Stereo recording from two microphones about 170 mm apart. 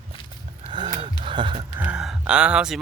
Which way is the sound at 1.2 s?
30° right (ahead or behind).